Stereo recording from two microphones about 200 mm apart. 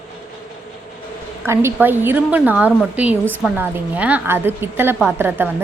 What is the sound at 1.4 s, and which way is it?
A woman's voice, 10° right (ahead or behind).